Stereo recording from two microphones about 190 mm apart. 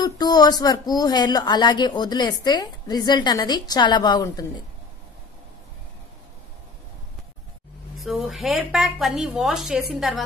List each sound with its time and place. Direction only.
0.0 s speech: 20° left (ahead or behind)
8.0 s a woman's voice: centre (ahead or behind)